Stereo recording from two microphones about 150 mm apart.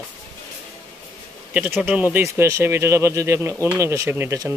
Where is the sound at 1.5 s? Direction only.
10° right (ahead or behind).